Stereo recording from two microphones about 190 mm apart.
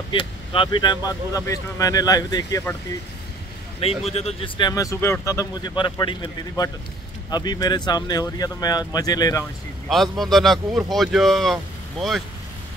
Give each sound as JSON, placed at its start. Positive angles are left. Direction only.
{"t": 0.1, "sound": "speech", "side_deg": 25}
{"t": 4.0, "sound": "speech", "side_deg": 35}
{"t": 9.8, "sound": "speech", "side_deg": 0}